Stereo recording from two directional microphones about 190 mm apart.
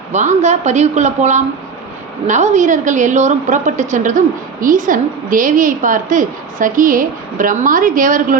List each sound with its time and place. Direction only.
0.1 s a woman's voice: 40° right (ahead or behind)